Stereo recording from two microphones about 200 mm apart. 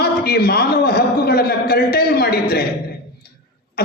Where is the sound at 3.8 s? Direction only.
50° left (ahead or behind).